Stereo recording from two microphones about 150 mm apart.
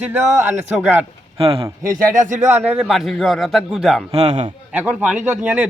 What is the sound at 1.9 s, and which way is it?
Speech, 60° right (ahead or behind).